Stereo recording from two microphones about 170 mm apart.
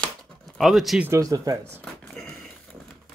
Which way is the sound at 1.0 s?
15° right (ahead or behind).